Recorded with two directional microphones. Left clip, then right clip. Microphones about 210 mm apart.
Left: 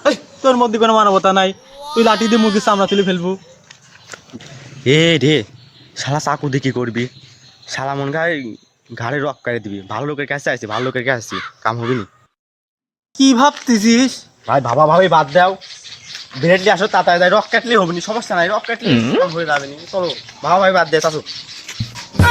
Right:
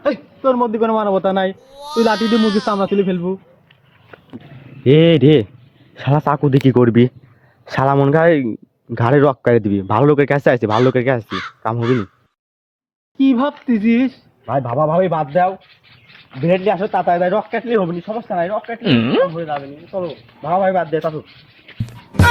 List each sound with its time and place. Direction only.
0.0 s speech: 10° left (ahead or behind)
4.8 s speech: 20° right (ahead or behind); by 10.7 s 35° right (ahead or behind)
10.7 s speech: centre (ahead or behind)
10.9 s speech: 20° right (ahead or behind)
11.3 s speech: centre (ahead or behind)
13.1 s speech: 10° left (ahead or behind)
21.7 s music: centre (ahead or behind)